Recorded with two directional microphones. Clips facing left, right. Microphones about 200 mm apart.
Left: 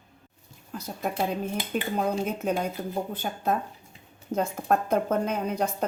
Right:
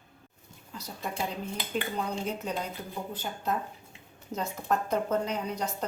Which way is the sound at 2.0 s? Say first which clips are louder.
Left 5 dB; 55° left (ahead or behind).